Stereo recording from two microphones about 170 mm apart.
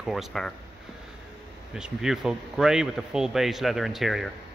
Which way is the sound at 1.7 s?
5° right (ahead or behind).